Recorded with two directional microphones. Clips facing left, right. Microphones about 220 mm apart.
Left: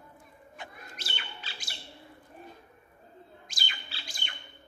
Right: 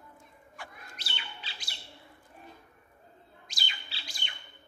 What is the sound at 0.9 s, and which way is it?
Squawk, 45° left (ahead or behind).